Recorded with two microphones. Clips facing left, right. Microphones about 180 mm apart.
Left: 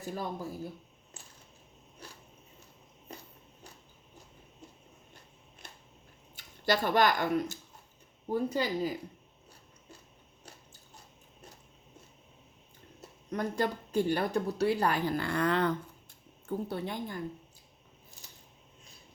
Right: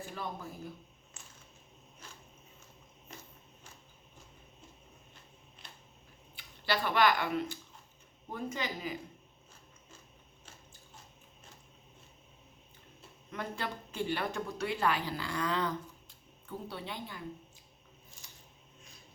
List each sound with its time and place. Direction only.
0.0 s speech: 40° left (ahead or behind)
6.3 s speech: 45° left (ahead or behind)
13.0 s speech: 45° left (ahead or behind); by 15.7 s 60° left (ahead or behind)
16.5 s speech: 45° left (ahead or behind)